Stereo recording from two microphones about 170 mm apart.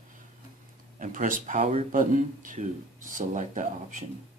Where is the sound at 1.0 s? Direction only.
50° right (ahead or behind).